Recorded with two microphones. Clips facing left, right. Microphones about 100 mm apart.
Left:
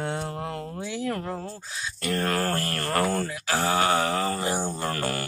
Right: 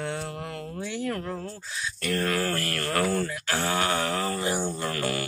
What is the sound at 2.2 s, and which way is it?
Mantra, 40° left (ahead or behind).